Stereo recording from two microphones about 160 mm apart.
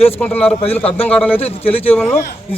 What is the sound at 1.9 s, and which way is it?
Speech, 10° left (ahead or behind).